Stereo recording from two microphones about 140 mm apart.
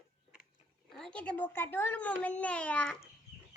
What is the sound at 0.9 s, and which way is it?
A child's voice, 5° left (ahead or behind).